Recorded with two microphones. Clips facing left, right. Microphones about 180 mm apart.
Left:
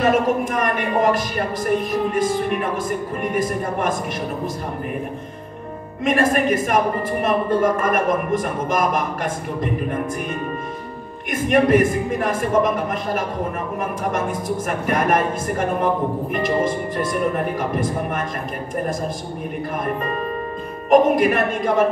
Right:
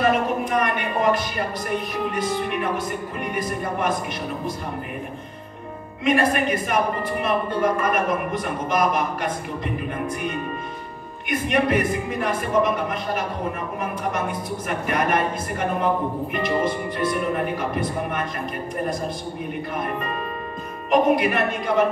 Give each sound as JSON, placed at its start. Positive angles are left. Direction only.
{"t": 0.5, "sound": "a woman's voice", "side_deg": 45}
{"t": 6.0, "sound": "a woman's voice", "side_deg": 45}
{"t": 11.2, "sound": "a woman's voice", "side_deg": 45}
{"t": 20.9, "sound": "a woman's voice", "side_deg": 45}